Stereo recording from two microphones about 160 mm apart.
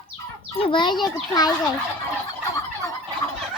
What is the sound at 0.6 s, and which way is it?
A child's voice, 30° left (ahead or behind).